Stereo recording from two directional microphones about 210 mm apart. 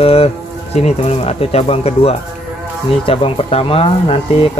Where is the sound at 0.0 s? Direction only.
30° left (ahead or behind).